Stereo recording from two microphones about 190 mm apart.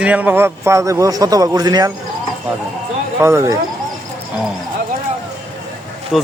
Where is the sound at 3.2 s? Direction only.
15° right (ahead or behind).